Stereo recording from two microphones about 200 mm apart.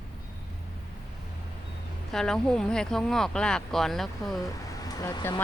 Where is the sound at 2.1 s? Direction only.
Centre (ahead or behind).